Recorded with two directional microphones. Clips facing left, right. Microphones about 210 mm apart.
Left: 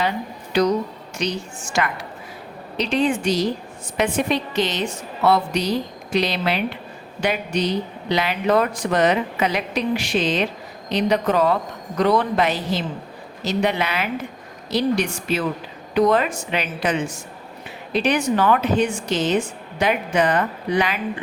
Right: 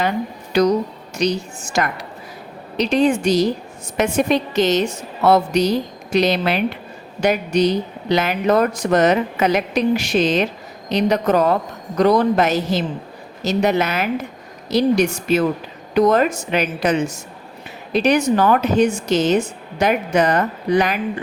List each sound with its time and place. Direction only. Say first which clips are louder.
0.5 s a woman's voice: right 3 dB; 45° right (ahead or behind)